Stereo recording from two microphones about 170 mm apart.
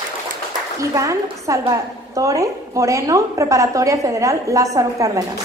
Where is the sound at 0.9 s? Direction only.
20° right (ahead or behind).